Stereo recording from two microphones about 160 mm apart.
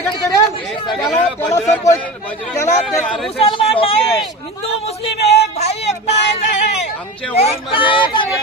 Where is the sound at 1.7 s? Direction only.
20° left (ahead or behind).